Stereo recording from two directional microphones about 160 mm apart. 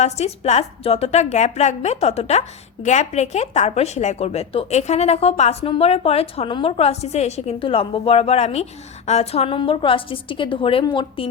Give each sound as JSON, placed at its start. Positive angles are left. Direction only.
{"t": 0.0, "sound": "a woman's voice", "side_deg": 45}